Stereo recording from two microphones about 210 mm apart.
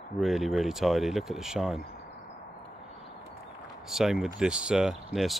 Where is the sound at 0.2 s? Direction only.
Centre (ahead or behind).